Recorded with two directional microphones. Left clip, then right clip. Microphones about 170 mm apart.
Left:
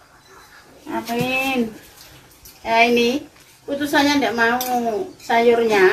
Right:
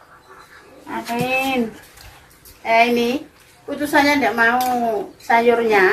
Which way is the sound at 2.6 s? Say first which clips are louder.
Even; 10° right (ahead or behind).